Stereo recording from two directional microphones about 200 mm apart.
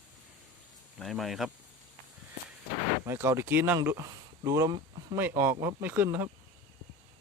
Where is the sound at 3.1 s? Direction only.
10° right (ahead or behind).